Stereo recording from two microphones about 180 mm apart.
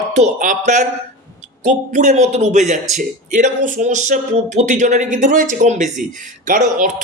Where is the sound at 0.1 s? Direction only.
45° right (ahead or behind).